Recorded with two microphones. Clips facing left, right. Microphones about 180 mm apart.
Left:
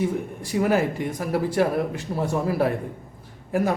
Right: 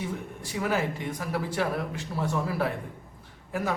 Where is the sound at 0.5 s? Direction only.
50° left (ahead or behind).